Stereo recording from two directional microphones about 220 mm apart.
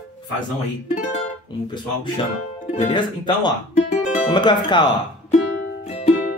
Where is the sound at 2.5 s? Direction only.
30° left (ahead or behind).